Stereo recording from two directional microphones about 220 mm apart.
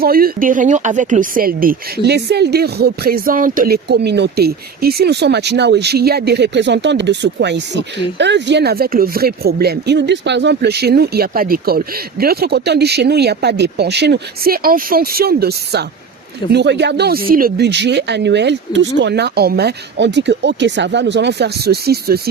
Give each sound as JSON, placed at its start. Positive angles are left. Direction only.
{"t": 0.0, "sound": "speech", "side_deg": -40}